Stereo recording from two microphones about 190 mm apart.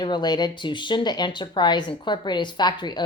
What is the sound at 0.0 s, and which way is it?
Speech, 25° left (ahead or behind).